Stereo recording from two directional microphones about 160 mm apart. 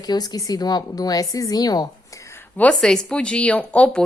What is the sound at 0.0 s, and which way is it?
A woman's voice, 25° left (ahead or behind).